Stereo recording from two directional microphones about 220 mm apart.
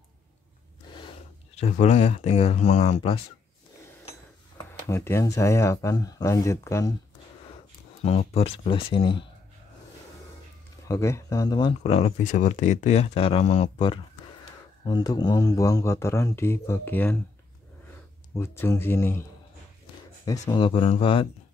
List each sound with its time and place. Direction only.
0.9 s speech: 25° left (ahead or behind)
4.8 s speech: 10° left (ahead or behind)
8.0 s speech: 30° left (ahead or behind)
10.9 s speech: 15° left (ahead or behind)
18.3 s speech: 10° left (ahead or behind)
20.2 s speech: 20° left (ahead or behind)